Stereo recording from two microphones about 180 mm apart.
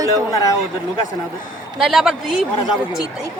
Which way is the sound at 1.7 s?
Centre (ahead or behind).